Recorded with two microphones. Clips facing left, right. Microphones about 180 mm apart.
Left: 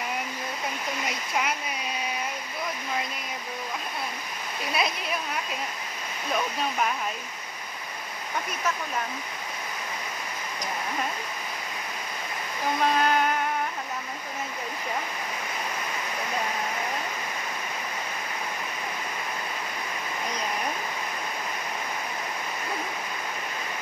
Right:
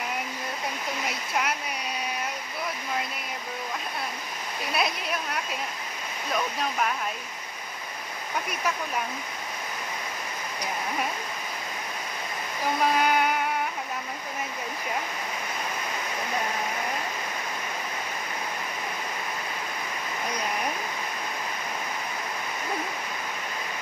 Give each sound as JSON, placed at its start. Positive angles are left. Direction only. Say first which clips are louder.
{"t": 1.0, "sound": "speech", "louder": "even", "side_deg": 0}
{"t": 4.7, "sound": "a woman's voice", "louder": "even", "side_deg": 0}
{"t": 12.8, "sound": "a sound", "louder": "even", "side_deg": -5}